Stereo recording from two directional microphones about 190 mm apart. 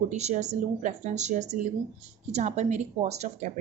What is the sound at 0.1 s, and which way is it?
Speech, 35° right (ahead or behind).